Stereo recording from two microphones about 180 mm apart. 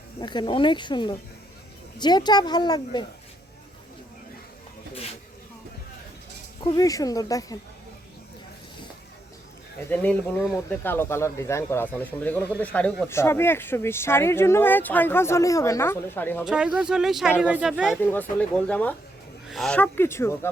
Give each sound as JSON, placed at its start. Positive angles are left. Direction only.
{"t": 0.2, "sound": "speech", "side_deg": 25}
{"t": 6.7, "sound": "speech", "side_deg": 20}
{"t": 9.9, "sound": "speech", "side_deg": 10}
{"t": 10.3, "sound": "speech", "side_deg": -5}
{"t": 10.7, "sound": "speech", "side_deg": 10}
{"t": 16.4, "sound": "speech", "side_deg": -5}
{"t": 17.9, "sound": "speech", "side_deg": 10}